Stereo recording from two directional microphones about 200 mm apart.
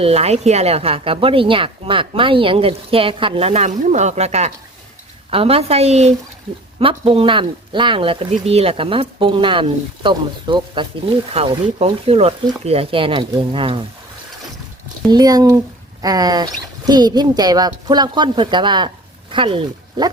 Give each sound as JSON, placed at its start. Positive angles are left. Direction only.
{"t": 0.0, "sound": "a woman's voice", "side_deg": -30}
{"t": 15.1, "sound": "speech", "side_deg": -20}